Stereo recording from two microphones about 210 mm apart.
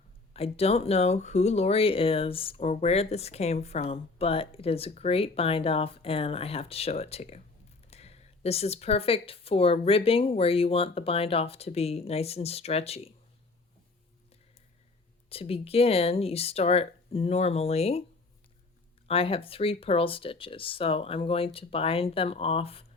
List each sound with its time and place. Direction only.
0.3 s speech: 30° left (ahead or behind)
15.3 s speech: 30° left (ahead or behind)
19.0 s speech: 25° left (ahead or behind)